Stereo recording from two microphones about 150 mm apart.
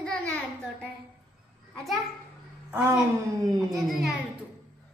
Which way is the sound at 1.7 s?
Centre (ahead or behind).